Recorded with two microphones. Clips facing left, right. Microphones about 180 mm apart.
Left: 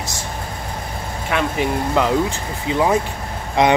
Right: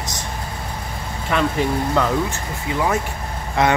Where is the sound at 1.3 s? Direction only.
10° left (ahead or behind).